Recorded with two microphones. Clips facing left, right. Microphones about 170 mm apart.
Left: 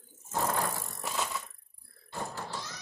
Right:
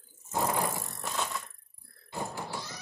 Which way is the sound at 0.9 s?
Centre (ahead or behind).